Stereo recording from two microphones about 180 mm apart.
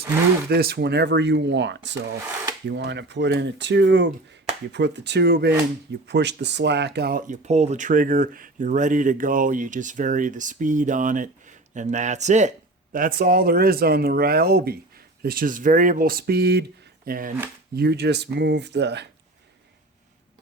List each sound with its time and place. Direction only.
0.5 s speech: 60° right (ahead or behind)
7.3 s speech: 40° right (ahead or behind); by 16.6 s 60° right (ahead or behind)
17.1 s speech: 50° right (ahead or behind)
17.7 s speech: 65° right (ahead or behind)